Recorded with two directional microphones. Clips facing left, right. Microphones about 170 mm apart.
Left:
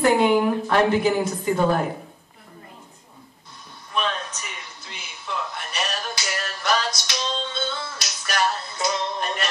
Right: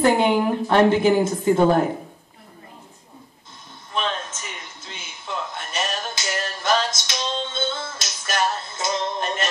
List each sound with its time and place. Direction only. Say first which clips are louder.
0.2 s a woman's voice: left 1 dB; 25° right (ahead or behind)
3.9 s a sound: even; 25° right (ahead or behind)
4.9 s music: even; 25° right (ahead or behind)